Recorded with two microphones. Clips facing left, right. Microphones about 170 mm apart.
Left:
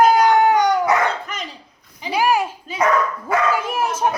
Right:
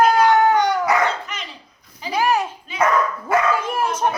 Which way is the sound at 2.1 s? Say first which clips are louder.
Left 1 dB; 10° left (ahead or behind).